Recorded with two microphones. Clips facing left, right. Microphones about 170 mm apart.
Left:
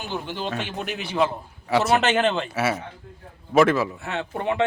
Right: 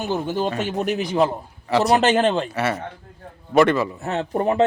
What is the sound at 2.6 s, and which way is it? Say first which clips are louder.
A man's voice: right 1 dB; 5° left (ahead or behind).